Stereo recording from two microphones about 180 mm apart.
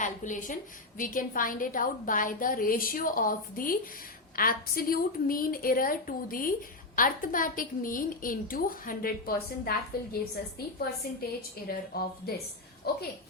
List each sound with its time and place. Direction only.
0.0 s a sound: 45° left (ahead or behind)
0.9 s a woman's voice: 50° left (ahead or behind)
11.7 s a woman's voice: 55° left (ahead or behind)